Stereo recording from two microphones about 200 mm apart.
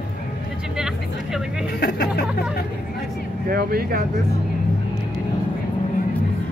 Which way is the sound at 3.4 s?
50° right (ahead or behind).